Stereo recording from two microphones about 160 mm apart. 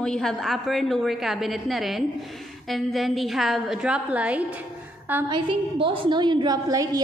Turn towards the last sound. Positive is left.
turn(degrees=-25)  # may be behind; listen again after turning